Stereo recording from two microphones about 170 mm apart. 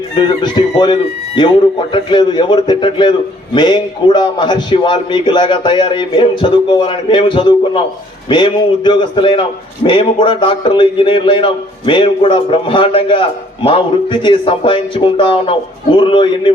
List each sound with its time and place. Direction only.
0.3 s a man's voice: 25° left (ahead or behind)